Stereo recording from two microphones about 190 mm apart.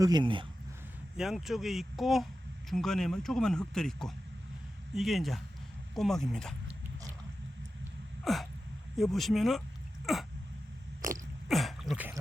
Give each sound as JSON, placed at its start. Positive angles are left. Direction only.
{"t": 0.0, "sound": "speech", "side_deg": -25}
{"t": 1.1, "sound": "speech", "side_deg": 0}
{"t": 8.2, "sound": "sneeze", "side_deg": 0}
{"t": 9.0, "sound": "speech", "side_deg": 0}
{"t": 11.0, "sound": "biting", "side_deg": -45}
{"t": 11.4, "sound": "throat clearing", "side_deg": 0}